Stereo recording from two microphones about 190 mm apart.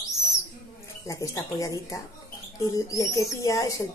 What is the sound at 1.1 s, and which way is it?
Speech, 20° left (ahead or behind).